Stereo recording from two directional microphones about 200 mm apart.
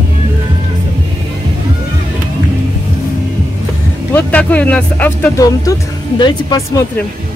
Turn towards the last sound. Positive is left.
turn(degrees=20)  # may be behind; listen again after turning